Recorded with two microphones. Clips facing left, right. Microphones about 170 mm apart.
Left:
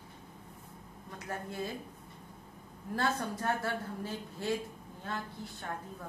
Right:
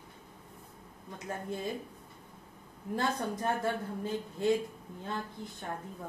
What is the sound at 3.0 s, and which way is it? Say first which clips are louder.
A woman's voice: right 1 dB; 15° right (ahead or behind).